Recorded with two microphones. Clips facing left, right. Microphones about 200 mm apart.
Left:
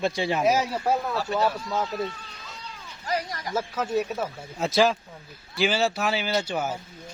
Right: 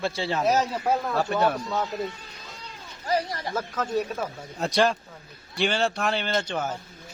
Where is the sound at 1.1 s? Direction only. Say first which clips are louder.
Right 2 dB; 55° right (ahead or behind).